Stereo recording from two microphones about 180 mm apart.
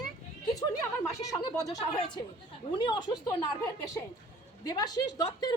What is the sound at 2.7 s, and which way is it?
A woman's voice, 25° left (ahead or behind).